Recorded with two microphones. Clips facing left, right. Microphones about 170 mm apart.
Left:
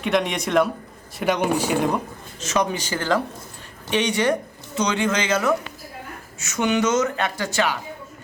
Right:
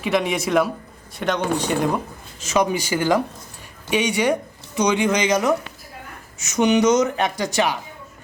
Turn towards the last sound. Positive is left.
turn(degrees=-15)  # may be behind; listen again after turning